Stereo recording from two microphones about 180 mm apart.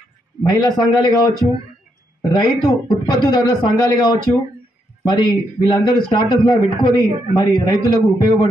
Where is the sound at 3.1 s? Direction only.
20° left (ahead or behind).